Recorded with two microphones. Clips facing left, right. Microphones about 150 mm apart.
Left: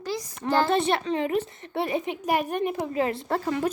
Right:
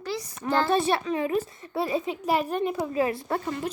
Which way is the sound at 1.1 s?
35° left (ahead or behind).